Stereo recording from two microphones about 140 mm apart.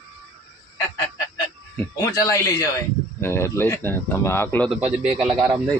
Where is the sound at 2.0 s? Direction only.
25° left (ahead or behind).